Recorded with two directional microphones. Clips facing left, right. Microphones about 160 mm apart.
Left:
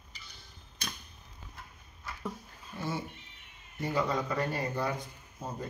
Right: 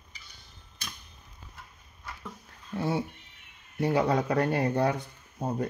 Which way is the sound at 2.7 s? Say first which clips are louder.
Right 7 dB; 65° right (ahead or behind).